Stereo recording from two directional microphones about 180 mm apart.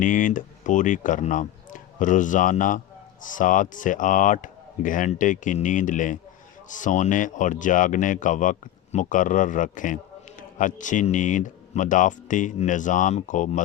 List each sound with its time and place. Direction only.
0.0 s speech: 45° left (ahead or behind)